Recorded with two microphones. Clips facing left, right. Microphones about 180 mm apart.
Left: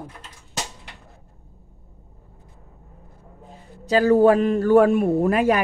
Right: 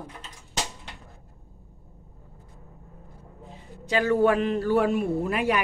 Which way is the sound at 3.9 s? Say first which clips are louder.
Left 6 dB; 35° left (ahead or behind).